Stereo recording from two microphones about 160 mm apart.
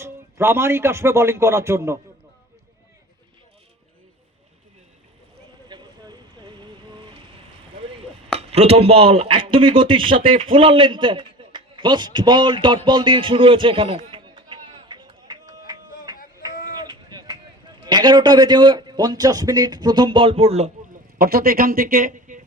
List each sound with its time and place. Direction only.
0.0 s a man's voice: 15° right (ahead or behind)
5.6 s boat: 25° right (ahead or behind)
8.4 s a man's voice: 40° right (ahead or behind)
15.6 s a sound: 25° right (ahead or behind)
17.8 s a man's voice: 25° right (ahead or behind)
21.2 s a man's voice: 70° right (ahead or behind)